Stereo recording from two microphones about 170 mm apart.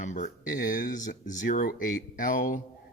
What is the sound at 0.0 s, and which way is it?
Speech, 45° left (ahead or behind).